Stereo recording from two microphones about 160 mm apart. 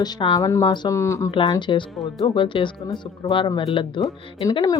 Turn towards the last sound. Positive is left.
turn(degrees=25)  # may be behind; listen again after turning